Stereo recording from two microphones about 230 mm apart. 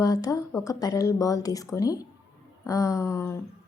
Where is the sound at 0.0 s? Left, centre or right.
Centre.